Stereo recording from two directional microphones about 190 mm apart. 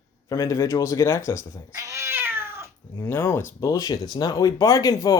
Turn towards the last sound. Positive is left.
turn(degrees=20)  # may be behind; listen again after turning